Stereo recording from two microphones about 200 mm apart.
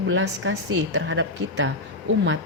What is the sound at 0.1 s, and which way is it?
A woman's voice, 75° right (ahead or behind).